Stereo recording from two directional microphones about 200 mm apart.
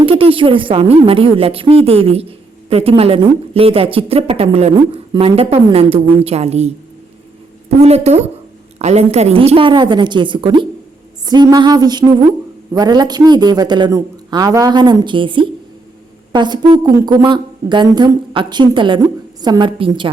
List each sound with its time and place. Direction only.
0.0 s a woman's voice: 25° right (ahead or behind)
7.8 s a woman's voice: 30° right (ahead or behind)